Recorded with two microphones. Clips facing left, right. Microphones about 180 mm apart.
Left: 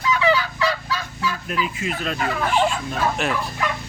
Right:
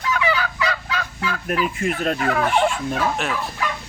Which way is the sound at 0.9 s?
55° right (ahead or behind).